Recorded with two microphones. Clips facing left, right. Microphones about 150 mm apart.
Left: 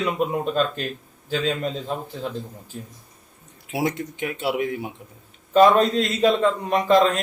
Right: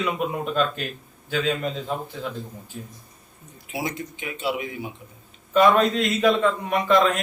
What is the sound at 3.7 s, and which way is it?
Speech, 65° left (ahead or behind).